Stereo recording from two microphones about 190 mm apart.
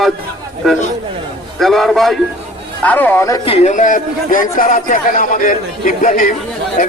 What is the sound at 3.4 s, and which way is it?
A man's voice, 35° left (ahead or behind).